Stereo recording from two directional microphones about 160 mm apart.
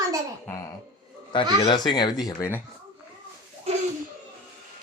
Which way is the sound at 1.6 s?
25° left (ahead or behind).